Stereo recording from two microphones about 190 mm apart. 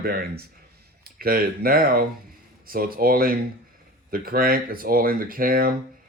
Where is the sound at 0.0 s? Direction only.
55° right (ahead or behind).